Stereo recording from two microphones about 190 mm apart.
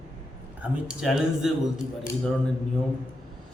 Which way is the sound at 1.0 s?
Centre (ahead or behind).